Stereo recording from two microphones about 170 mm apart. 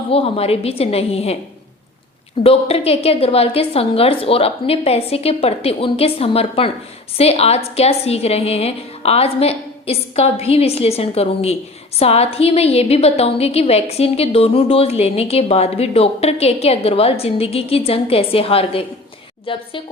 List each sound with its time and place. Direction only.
0.1 s a woman's voice: 35° left (ahead or behind)
2.4 s a woman's voice: 35° left (ahead or behind)